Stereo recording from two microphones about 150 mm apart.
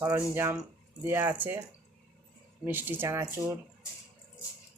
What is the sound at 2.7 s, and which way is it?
Speech, 15° right (ahead or behind).